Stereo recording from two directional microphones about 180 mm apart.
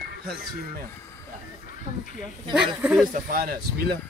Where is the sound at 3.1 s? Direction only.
50° right (ahead or behind).